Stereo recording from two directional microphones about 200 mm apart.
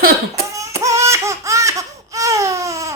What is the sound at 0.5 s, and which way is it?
Baby cry, 15° right (ahead or behind).